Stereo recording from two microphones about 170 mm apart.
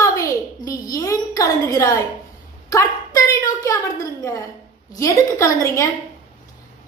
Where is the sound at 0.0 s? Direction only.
20° left (ahead or behind).